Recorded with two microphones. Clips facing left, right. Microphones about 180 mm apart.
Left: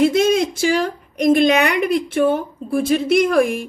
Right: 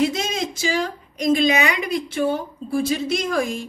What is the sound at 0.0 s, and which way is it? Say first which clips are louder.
A woman's voice: left 7 dB; 55° left (ahead or behind).